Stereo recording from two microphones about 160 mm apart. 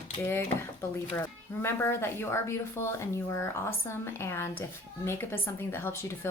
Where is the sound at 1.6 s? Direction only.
15° left (ahead or behind).